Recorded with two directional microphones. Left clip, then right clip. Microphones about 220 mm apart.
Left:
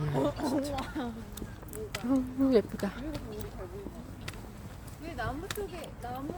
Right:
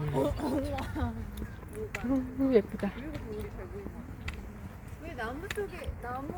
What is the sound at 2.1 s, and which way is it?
Speech, 5° left (ahead or behind).